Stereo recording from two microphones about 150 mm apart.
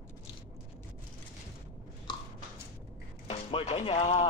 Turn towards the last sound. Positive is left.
turn(degrees=45)  # may be behind; listen again after turning